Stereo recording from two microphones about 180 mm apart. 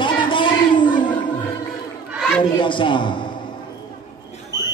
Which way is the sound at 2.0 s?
Centre (ahead or behind).